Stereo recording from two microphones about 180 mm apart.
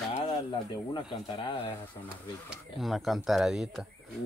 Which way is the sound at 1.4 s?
30° left (ahead or behind).